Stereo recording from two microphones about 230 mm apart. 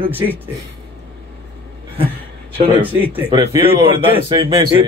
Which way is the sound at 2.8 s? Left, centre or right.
Centre.